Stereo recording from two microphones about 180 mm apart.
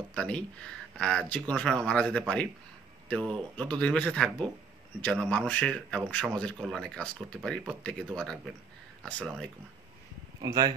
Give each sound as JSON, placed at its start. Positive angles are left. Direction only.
{"t": 0.1, "sound": "a man's voice", "side_deg": 5}
{"t": 10.4, "sound": "speech", "side_deg": -20}